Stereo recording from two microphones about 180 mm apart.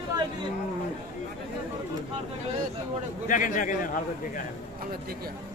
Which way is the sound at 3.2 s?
50° left (ahead or behind).